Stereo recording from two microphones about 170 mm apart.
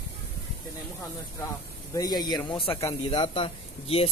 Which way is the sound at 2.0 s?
25° left (ahead or behind).